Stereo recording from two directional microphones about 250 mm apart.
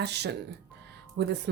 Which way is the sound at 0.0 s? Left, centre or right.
Right.